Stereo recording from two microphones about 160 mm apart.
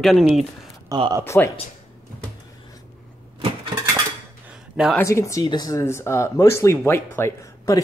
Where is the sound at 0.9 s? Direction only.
25° right (ahead or behind).